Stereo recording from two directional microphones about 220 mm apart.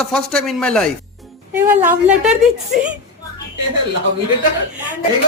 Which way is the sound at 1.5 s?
10° right (ahead or behind).